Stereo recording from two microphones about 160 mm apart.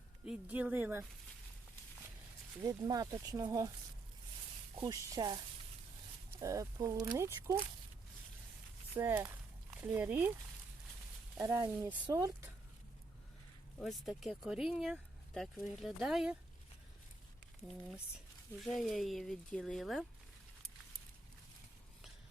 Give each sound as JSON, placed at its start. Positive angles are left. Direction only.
{"t": 0.3, "sound": "speech", "side_deg": -10}
{"t": 2.6, "sound": "speech", "side_deg": -25}
{"t": 4.7, "sound": "speech", "side_deg": -20}
{"t": 6.4, "sound": "speech", "side_deg": -20}
{"t": 9.0, "sound": "speech", "side_deg": -15}
{"t": 11.3, "sound": "speech", "side_deg": -20}
{"t": 13.7, "sound": "speech", "side_deg": 0}
{"t": 18.6, "sound": "speech", "side_deg": 0}